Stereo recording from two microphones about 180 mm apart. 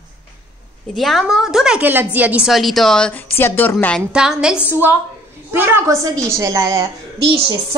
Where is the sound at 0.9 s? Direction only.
Centre (ahead or behind); by 6.9 s 20° right (ahead or behind).